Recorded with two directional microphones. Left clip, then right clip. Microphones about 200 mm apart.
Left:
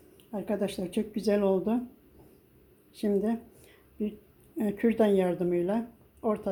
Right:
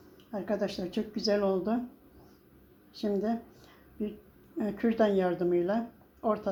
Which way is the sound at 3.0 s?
30° left (ahead or behind).